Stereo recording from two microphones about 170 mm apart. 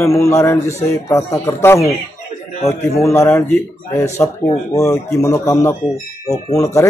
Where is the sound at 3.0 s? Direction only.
15° left (ahead or behind).